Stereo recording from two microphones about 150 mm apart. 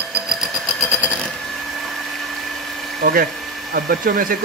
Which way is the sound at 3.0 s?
75° right (ahead or behind).